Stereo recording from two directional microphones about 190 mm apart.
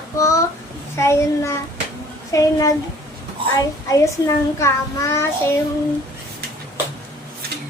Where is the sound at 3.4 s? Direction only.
25° right (ahead or behind).